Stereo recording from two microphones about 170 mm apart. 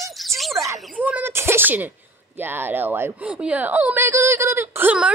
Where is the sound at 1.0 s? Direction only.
10° right (ahead or behind).